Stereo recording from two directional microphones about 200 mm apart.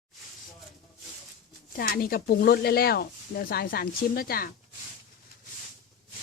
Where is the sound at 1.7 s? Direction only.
45° left (ahead or behind).